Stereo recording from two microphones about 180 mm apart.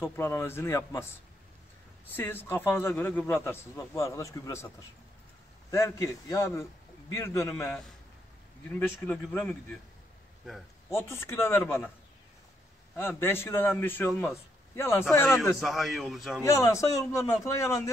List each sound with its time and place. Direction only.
0.0 s a man's voice: 10° left (ahead or behind)
2.1 s a man's voice: 10° left (ahead or behind)
10.9 s a man's voice: 15° left (ahead or behind)
12.9 s a man's voice: 10° left (ahead or behind)
15.6 s a man's voice: centre (ahead or behind)
16.4 s a man's voice: 15° left (ahead or behind)